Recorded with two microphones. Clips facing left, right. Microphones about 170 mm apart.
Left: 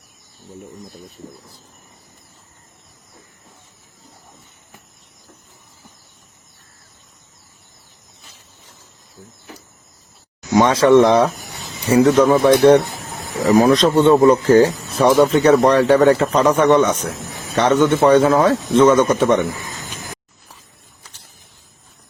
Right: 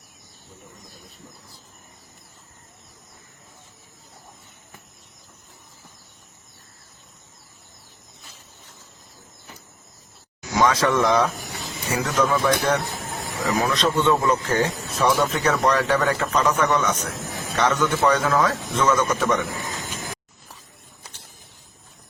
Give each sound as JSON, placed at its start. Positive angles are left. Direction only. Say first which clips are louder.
{"t": 10.6, "sound": "a man's voice", "louder": "left 8 dB", "side_deg": 30}
{"t": 13.6, "sound": "a man's voice", "louder": "left 9 dB", "side_deg": 40}